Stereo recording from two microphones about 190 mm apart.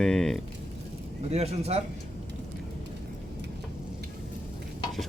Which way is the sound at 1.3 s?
35° right (ahead or behind).